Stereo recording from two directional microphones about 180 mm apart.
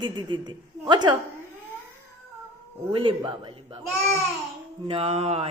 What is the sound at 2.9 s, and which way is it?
A woman's voice, 30° right (ahead or behind).